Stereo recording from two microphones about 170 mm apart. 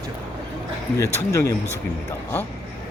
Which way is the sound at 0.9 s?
15° left (ahead or behind).